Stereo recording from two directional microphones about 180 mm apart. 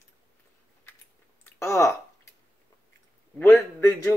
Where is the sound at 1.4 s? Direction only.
15° left (ahead or behind).